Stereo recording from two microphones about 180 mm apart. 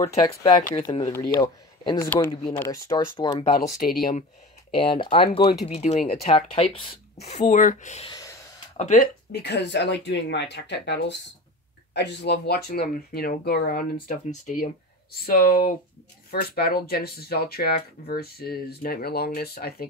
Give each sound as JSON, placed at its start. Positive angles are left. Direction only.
{"t": 0.3, "sound": "speech", "side_deg": 25}
{"t": 5.0, "sound": "speech", "side_deg": 30}
{"t": 8.1, "sound": "gasp", "side_deg": 20}
{"t": 8.7, "sound": "speech", "side_deg": 45}